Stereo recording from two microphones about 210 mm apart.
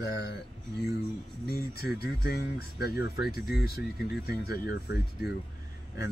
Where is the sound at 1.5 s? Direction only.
50° left (ahead or behind).